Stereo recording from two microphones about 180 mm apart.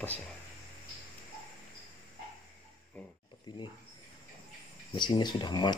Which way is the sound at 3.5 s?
25° left (ahead or behind).